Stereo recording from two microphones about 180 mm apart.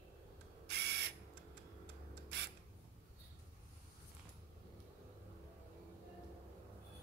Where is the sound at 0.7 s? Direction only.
70° right (ahead or behind).